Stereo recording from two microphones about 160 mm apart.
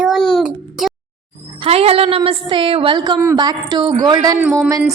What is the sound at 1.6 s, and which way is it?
A woman's voice, 40° right (ahead or behind).